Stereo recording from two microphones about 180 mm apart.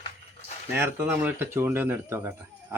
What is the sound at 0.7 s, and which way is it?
Speech, 10° right (ahead or behind).